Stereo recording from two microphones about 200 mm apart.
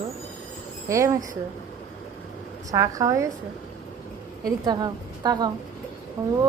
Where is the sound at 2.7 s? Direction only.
15° right (ahead or behind).